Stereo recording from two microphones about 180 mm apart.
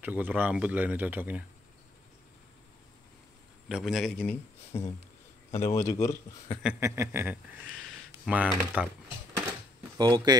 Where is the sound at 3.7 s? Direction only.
5° right (ahead or behind); by 6.5 s 15° left (ahead or behind).